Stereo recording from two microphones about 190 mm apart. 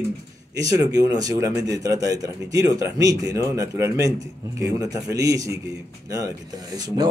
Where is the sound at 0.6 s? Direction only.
20° right (ahead or behind).